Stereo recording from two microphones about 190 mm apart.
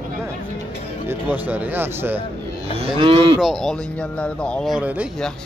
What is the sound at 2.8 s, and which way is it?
Cattle, 25° right (ahead or behind).